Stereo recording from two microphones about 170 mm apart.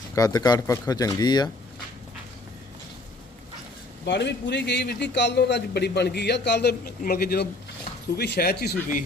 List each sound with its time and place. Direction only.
0.2 s speech: 25° left (ahead or behind)
4.0 s a man's voice: 90° left; by 9.0 s 60° left (ahead or behind)